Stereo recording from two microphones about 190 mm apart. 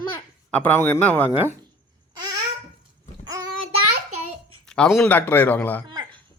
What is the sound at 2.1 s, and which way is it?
Babbling, 20° right (ahead or behind).